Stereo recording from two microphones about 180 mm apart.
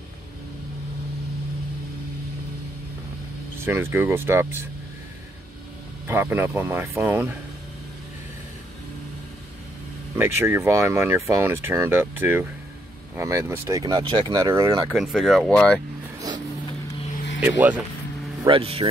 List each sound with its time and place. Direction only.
3.6 s speech: 15° right (ahead or behind)
6.0 s speech: 10° right (ahead or behind)
10.1 s speech: 15° right (ahead or behind)
14.9 s speech: centre (ahead or behind)
17.5 s speech: 10° right (ahead or behind)
18.4 s speech: 30° right (ahead or behind)